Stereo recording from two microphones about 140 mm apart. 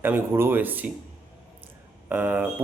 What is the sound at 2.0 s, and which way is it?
Speech, 10° right (ahead or behind).